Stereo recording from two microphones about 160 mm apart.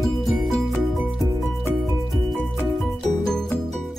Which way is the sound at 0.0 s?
Centre (ahead or behind).